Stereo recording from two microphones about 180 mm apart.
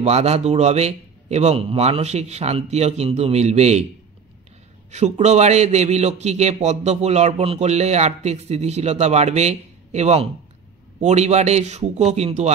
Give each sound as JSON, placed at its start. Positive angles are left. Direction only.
{"t": 0.0, "sound": "a man's voice", "side_deg": -35}
{"t": 4.9, "sound": "a man's voice", "side_deg": -40}